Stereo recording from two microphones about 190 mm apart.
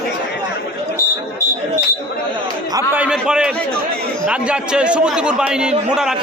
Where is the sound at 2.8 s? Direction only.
10° right (ahead or behind).